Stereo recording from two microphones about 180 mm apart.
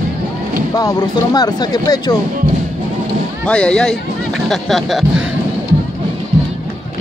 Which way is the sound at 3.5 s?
5° left (ahead or behind).